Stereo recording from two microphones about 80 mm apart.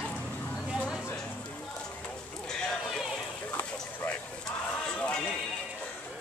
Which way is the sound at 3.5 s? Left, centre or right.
Left.